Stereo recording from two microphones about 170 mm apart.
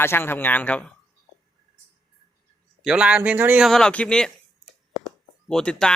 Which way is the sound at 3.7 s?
5° left (ahead or behind).